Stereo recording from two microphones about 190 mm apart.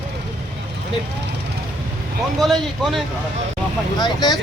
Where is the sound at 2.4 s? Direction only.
Centre (ahead or behind).